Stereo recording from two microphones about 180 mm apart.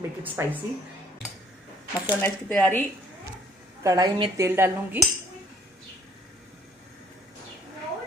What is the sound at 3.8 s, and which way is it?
A woman's voice, 20° right (ahead or behind).